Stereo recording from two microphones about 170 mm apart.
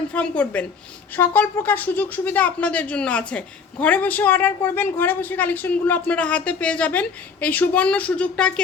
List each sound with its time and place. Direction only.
0.1 s a woman's voice: 10° left (ahead or behind)